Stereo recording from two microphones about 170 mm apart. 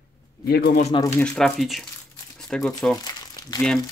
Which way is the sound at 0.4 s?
70° left (ahead or behind).